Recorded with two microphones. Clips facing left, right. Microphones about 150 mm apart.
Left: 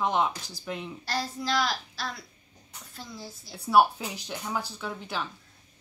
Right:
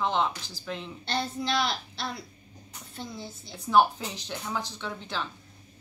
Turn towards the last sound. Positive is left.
turn(degrees=5)  # may be behind; listen again after turning